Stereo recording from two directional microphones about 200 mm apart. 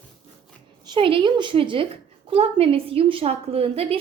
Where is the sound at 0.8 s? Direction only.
25° right (ahead or behind).